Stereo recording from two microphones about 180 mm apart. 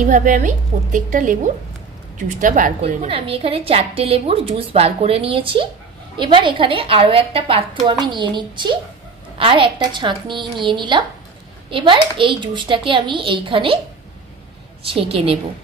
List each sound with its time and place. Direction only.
0.0 s a woman's voice: 45° right (ahead or behind)
3.1 s a woman's voice: 30° right (ahead or behind)
14.9 s a woman's voice: 30° right (ahead or behind)